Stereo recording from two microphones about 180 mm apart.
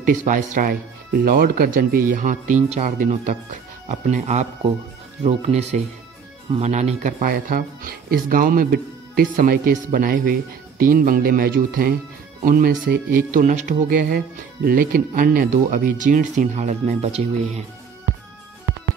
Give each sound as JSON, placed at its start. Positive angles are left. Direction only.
{"t": 0.0, "sound": "speech", "side_deg": -45}